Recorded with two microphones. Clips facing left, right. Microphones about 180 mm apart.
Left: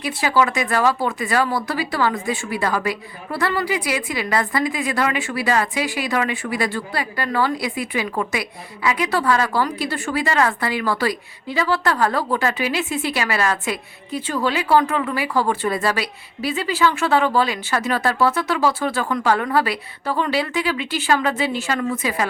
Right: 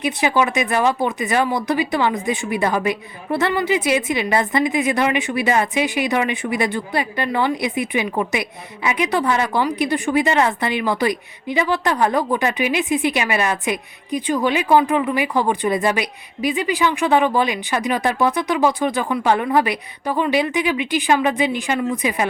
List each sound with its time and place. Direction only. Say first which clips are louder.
0.0 s a woman's voice: right 1 dB; 20° right (ahead or behind)